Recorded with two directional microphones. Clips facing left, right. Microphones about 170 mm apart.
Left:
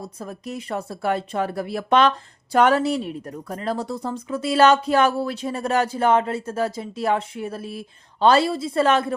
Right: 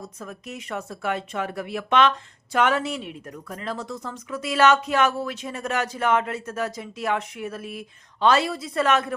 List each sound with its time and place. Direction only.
0.0 s speech: 35° left (ahead or behind)